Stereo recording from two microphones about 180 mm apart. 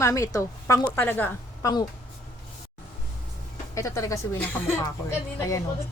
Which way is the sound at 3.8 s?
15° left (ahead or behind).